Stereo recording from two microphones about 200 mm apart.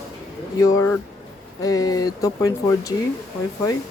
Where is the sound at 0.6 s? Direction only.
15° left (ahead or behind).